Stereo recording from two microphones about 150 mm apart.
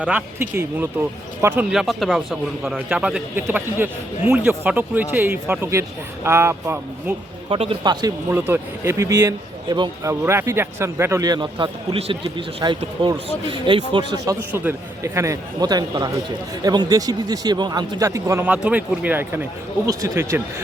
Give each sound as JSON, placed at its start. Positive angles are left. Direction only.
{"t": 0.0, "sound": "speech", "side_deg": -10}
{"t": 1.7, "sound": "speech", "side_deg": 0}
{"t": 7.5, "sound": "speech", "side_deg": -35}
{"t": 8.0, "sound": "a man's voice", "side_deg": -15}
{"t": 10.1, "sound": "a man's voice", "side_deg": -20}
{"t": 14.5, "sound": "a man's voice", "side_deg": -15}